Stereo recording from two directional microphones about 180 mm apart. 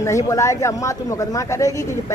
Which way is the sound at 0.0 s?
15° left (ahead or behind).